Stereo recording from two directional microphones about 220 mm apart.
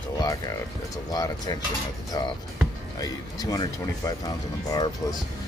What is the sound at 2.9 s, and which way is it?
Speech, 15° left (ahead or behind).